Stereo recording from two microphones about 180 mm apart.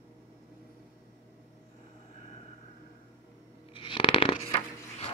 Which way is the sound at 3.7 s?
30° left (ahead or behind).